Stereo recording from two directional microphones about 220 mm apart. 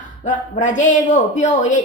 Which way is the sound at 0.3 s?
35° left (ahead or behind).